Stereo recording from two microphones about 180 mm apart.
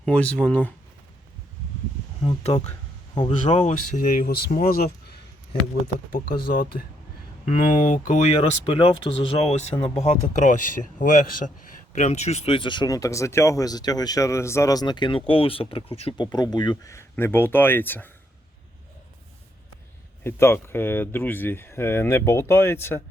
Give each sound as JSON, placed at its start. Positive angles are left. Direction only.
{"t": 0.0, "sound": "speech", "side_deg": 5}
{"t": 2.2, "sound": "speech", "side_deg": 35}
{"t": 3.6, "sound": "speech", "side_deg": 45}
{"t": 6.1, "sound": "speech", "side_deg": 50}
{"t": 20.2, "sound": "speech", "side_deg": 15}